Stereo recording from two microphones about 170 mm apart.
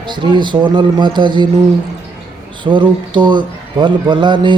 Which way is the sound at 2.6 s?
30° right (ahead or behind).